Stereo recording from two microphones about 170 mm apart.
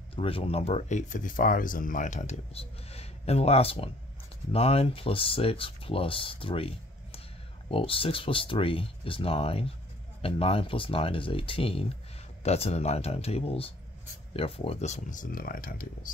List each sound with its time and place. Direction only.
0.1 s speech: 35° left (ahead or behind); by 16.1 s 55° left (ahead or behind)